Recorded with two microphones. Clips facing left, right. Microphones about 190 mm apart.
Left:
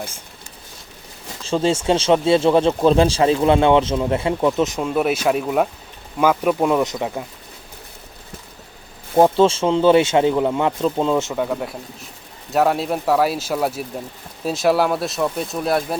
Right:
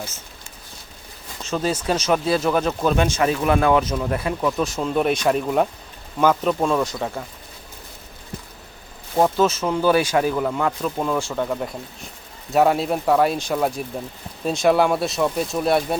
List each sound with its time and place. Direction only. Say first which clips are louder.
1.5 s speech: left 5 dB; 25° left (ahead or behind)
4.8 s speech: left 1 dB; 5° left (ahead or behind)
9.1 s speech: left 4 dB; 30° left (ahead or behind)
11.3 s speech: left 2 dB; 5° left (ahead or behind)